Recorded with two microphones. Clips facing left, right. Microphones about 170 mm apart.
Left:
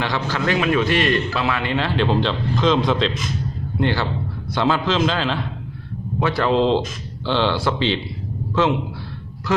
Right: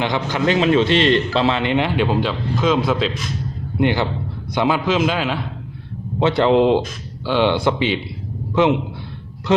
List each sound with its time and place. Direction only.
0.0 s a man's voice: 20° right (ahead or behind)
2.0 s a man's voice: 5° right (ahead or behind)
3.8 s a man's voice: 15° right (ahead or behind)
6.1 s a man's voice: 20° right (ahead or behind)